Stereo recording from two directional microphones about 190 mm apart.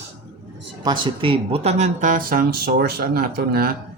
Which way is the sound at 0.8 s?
25° right (ahead or behind).